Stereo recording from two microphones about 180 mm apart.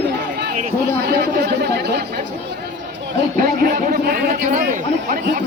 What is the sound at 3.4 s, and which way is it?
A man's voice, 50° right (ahead or behind).